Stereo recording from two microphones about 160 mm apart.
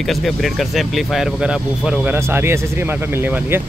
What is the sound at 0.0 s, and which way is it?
Speech, centre (ahead or behind).